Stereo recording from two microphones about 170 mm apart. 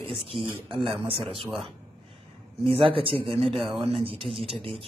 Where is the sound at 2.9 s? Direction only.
30° right (ahead or behind).